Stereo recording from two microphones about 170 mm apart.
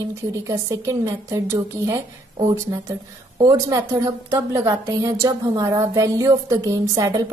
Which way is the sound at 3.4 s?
20° right (ahead or behind).